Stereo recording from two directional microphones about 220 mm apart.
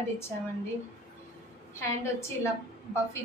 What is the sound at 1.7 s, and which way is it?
Speech, 10° left (ahead or behind).